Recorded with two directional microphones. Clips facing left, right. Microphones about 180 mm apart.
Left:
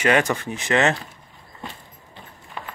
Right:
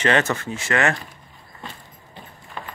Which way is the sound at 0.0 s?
10° left (ahead or behind).